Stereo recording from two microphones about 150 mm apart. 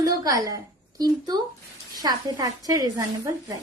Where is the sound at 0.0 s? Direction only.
25° right (ahead or behind).